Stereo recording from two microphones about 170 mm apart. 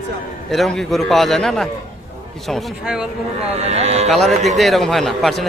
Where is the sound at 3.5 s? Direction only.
40° right (ahead or behind).